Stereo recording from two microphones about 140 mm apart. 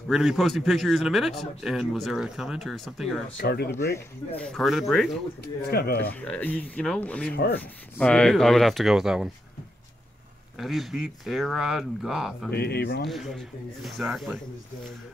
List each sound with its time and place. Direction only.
0.1 s speech: 5° right (ahead or behind)
3.3 s speech: 90° left
3.7 s speech: 20° left (ahead or behind)
4.4 s speech: 5° left (ahead or behind)
5.7 s speech: 90° left
6.0 s speech: 10° left (ahead or behind)
10.6 s speech: centre (ahead or behind)